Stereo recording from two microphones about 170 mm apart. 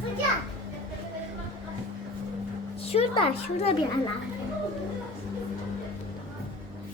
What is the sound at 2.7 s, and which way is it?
A woman's voice, 35° left (ahead or behind).